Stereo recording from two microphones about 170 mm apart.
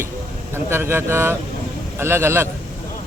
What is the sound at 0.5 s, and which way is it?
Speech, 15° right (ahead or behind).